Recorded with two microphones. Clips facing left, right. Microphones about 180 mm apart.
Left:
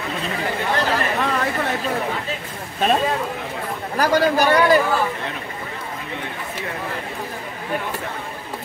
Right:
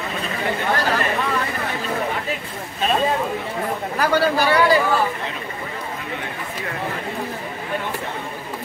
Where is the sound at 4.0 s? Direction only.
45° left (ahead or behind).